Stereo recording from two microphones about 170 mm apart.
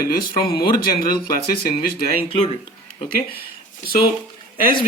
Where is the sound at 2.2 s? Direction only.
35° left (ahead or behind).